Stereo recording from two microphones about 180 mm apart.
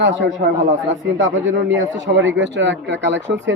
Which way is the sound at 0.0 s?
90° right.